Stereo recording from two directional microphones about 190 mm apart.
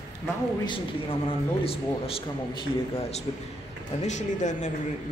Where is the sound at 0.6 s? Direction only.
25° left (ahead or behind).